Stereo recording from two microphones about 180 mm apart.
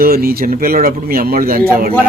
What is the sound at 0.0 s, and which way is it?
Speech, 55° right (ahead or behind).